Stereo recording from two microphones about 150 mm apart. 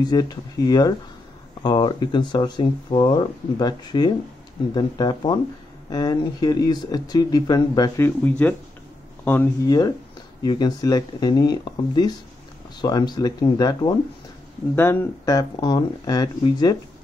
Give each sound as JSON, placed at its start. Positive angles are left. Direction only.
{"t": 0.0, "sound": "speech", "side_deg": 25}
{"t": 8.0, "sound": "speech", "side_deg": 10}
{"t": 9.7, "sound": "speech", "side_deg": 25}
{"t": 14.8, "sound": "speech", "side_deg": 15}
{"t": 15.2, "sound": "speech", "side_deg": 25}